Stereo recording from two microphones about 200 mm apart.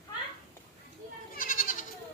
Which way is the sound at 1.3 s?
45° left (ahead or behind).